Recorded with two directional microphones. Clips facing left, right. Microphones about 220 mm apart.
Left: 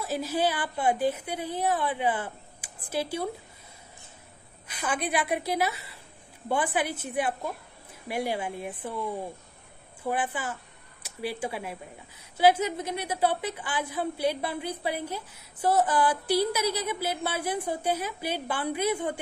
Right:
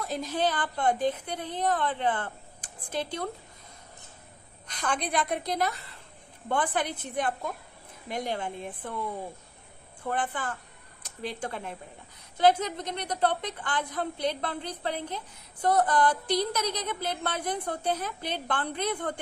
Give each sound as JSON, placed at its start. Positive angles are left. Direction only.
{"t": 0.0, "sound": "a woman's voice", "side_deg": 5}
{"t": 4.6, "sound": "a woman's voice", "side_deg": 5}
{"t": 10.0, "sound": "a woman's voice", "side_deg": 5}